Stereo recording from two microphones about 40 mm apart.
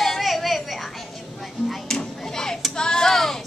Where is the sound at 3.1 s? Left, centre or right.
Centre.